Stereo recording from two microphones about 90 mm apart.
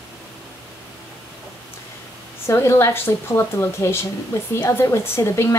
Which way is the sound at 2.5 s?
30° left (ahead or behind).